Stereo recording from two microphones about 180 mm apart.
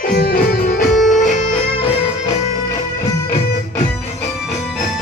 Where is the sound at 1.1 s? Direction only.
45° left (ahead or behind).